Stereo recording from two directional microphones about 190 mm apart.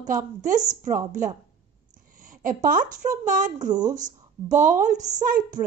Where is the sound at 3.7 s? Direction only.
20° right (ahead or behind).